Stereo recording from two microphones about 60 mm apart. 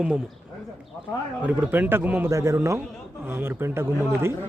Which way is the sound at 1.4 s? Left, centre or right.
Right.